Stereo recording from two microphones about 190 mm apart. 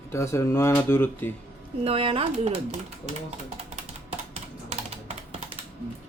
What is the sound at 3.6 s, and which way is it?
Computer keyboard, 35° right (ahead or behind).